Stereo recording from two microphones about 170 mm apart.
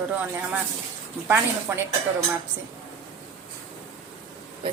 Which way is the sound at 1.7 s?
10° right (ahead or behind).